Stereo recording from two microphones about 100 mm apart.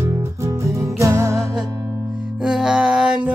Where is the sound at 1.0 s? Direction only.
30° right (ahead or behind).